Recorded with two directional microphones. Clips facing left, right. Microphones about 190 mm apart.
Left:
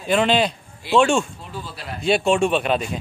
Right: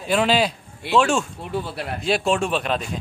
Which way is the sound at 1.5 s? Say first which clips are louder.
Right 6 dB; 65° right (ahead or behind).